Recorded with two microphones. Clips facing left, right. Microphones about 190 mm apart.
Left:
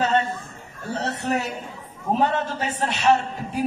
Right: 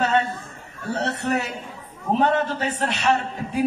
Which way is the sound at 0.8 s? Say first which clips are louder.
Right 1 dB; 65° right (ahead or behind).